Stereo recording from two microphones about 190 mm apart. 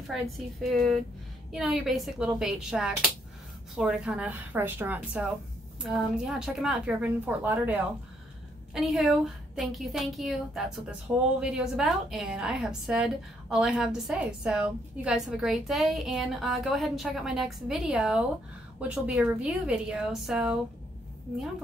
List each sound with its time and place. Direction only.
0.7 s a woman's voice: centre (ahead or behind)